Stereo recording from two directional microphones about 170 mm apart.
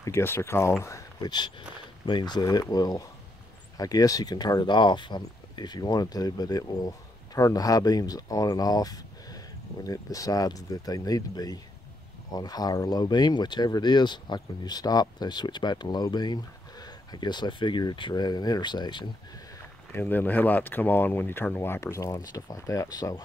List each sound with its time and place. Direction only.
0.0 s speech: 15° left (ahead or behind)
19.9 s speech: 10° left (ahead or behind)